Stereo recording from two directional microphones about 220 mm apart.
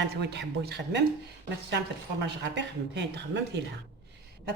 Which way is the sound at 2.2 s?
50° right (ahead or behind).